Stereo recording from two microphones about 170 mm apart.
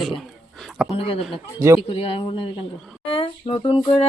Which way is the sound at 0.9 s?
35° left (ahead or behind).